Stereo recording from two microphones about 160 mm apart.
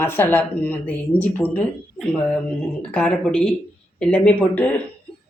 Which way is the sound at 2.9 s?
5° left (ahead or behind).